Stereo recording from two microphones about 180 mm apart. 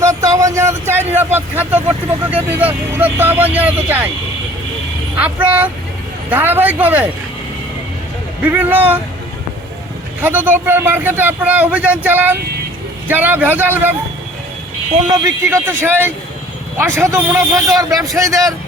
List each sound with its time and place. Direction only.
0.0 s speech: 20° right (ahead or behind)
5.1 s speech: 5° right (ahead or behind)
8.4 s speech: 10° right (ahead or behind)
10.2 s speech: 10° right (ahead or behind)
15.1 s a man's voice: 15° right (ahead or behind)